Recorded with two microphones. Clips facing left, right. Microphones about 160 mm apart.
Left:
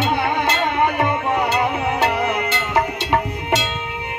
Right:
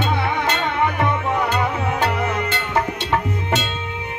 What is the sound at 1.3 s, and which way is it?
Music, 10° left (ahead or behind).